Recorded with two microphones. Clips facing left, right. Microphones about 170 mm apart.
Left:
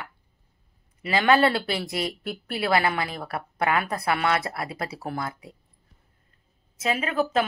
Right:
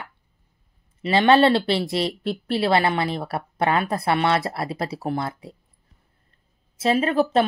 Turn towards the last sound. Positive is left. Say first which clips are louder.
# right 5 dB
turn(degrees=-30)  # may be behind; listen again after turning